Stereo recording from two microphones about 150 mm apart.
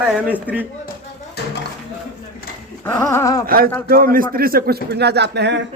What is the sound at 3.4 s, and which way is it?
Speech, 75° right (ahead or behind).